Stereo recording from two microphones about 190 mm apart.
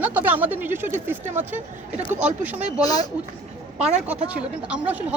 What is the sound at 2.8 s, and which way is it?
Speech, 20° left (ahead or behind).